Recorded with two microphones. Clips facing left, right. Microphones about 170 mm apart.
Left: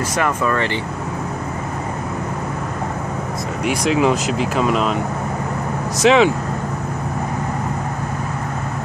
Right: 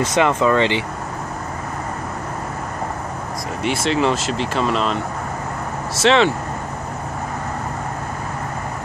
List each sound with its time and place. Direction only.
0.2 s speech: 20° right (ahead or behind)
3.6 s speech: 5° left (ahead or behind)
5.9 s speech: 10° left (ahead or behind)